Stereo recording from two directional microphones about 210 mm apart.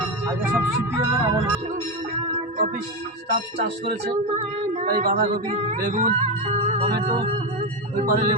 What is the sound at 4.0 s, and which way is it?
Speech, 35° right (ahead or behind).